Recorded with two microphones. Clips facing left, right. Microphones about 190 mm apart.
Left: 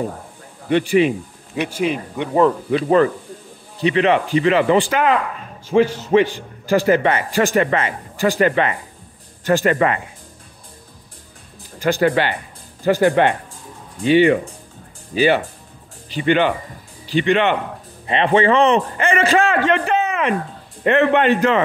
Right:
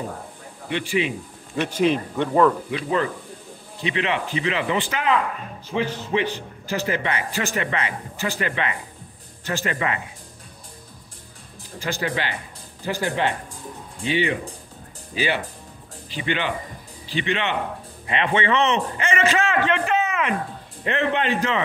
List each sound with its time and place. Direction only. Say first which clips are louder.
0.7 s speech: left 9 dB; 50° left (ahead or behind)
1.5 s speech: even; 10° left (ahead or behind)
2.7 s speech: left 9 dB; 45° left (ahead or behind)
11.8 s a man's voice: left 10 dB; 55° left (ahead or behind)
16.2 s speech: left 9 dB; 50° left (ahead or behind)
18.0 s a man's voice: left 7 dB; 35° left (ahead or behind)
20.8 s a man's voice: left 8 dB; 60° left (ahead or behind)